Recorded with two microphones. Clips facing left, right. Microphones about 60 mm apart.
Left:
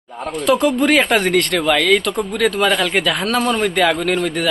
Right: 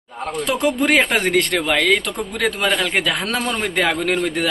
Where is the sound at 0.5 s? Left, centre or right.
Centre.